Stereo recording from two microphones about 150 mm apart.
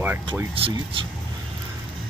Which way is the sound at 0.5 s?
40° right (ahead or behind).